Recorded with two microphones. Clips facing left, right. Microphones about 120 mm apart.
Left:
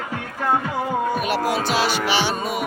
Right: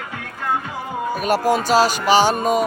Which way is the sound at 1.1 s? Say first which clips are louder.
Right 3 dB; 40° right (ahead or behind).